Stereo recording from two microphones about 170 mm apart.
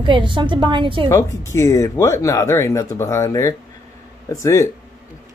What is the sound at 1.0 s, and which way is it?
Speech, 15° left (ahead or behind).